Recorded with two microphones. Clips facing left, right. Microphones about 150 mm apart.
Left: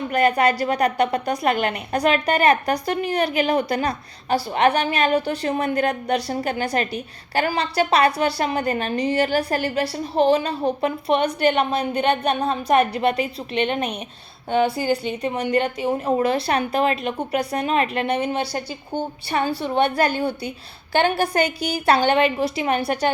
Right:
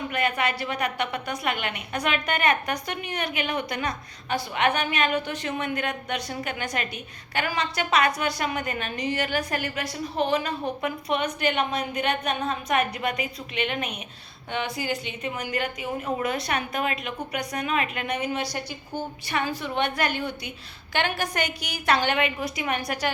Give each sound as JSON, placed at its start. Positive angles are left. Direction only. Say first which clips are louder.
{"t": 0.1, "sound": "a woman's voice", "louder": "left 10 dB", "side_deg": 40}